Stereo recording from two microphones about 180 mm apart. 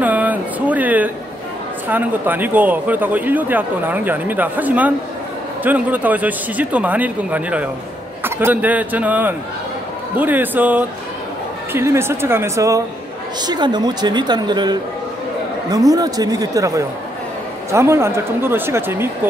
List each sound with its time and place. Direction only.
0.0 s a sound: 10° right (ahead or behind)
1.9 s a man's voice: 10° right (ahead or behind)
15.9 s a woman's voice: 20° right (ahead or behind)